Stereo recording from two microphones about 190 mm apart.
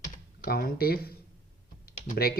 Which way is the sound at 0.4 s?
50° left (ahead or behind).